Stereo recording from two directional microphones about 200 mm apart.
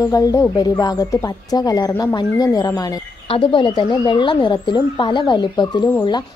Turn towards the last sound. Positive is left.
turn(degrees=20)  # may be behind; listen again after turning